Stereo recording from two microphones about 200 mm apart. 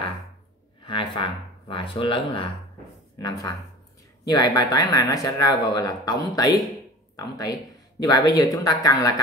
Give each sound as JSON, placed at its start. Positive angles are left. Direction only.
{"t": 0.8, "sound": "speech", "side_deg": 25}